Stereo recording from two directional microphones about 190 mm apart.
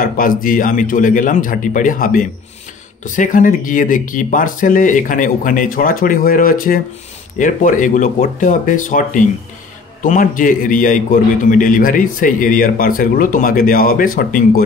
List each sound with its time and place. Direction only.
0.0 s speech: 45° left (ahead or behind)